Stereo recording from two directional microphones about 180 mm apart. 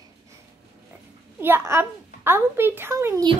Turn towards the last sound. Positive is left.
turn(degrees=-15)  # may be behind; listen again after turning